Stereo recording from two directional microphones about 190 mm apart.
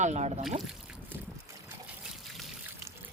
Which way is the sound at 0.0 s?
35° right (ahead or behind).